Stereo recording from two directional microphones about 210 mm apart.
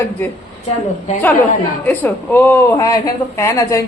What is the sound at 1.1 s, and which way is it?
Speech, 35° left (ahead or behind).